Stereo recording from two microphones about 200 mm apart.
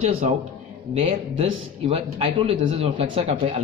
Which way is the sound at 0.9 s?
25° right (ahead or behind).